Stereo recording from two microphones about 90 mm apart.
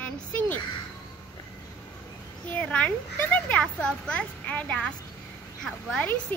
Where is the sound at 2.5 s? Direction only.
15° left (ahead or behind).